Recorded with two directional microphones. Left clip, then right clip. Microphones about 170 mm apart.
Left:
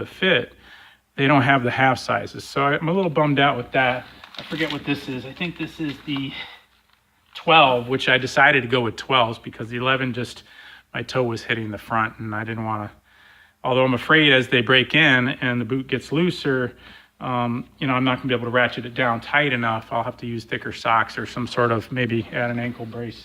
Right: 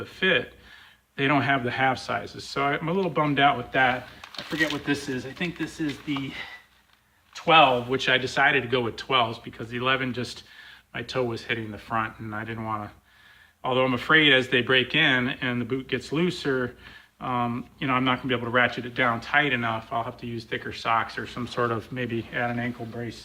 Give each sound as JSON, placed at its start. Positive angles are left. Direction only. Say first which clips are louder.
{"t": 0.0, "sound": "speech", "louder": "left 4 dB", "side_deg": 55}
{"t": 4.9, "sound": "speech", "louder": "left 1 dB", "side_deg": 25}
{"t": 7.3, "sound": "speech", "louder": "left 3 dB", "side_deg": 35}